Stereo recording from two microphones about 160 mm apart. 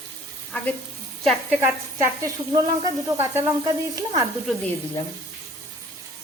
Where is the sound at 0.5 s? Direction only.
10° left (ahead or behind).